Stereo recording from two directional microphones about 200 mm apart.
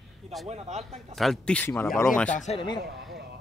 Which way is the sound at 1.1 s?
Centre (ahead or behind).